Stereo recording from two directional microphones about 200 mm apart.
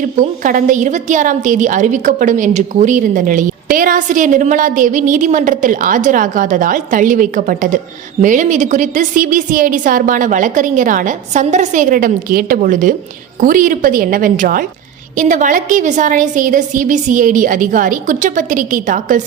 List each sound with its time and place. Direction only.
0.2 s a woman's voice: 40° right (ahead or behind)